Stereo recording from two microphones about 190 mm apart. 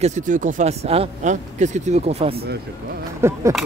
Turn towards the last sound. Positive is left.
turn(degrees=-15)  # may be behind; listen again after turning